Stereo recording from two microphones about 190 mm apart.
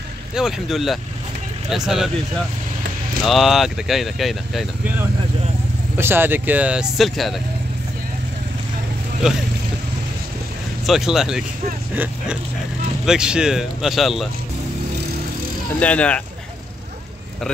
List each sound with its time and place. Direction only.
0.3 s speech: centre (ahead or behind)
3.3 s speech: centre (ahead or behind)
5.9 s speech: 10° right (ahead or behind)
10.9 s speech: centre (ahead or behind)
15.8 s speech: 5° left (ahead or behind)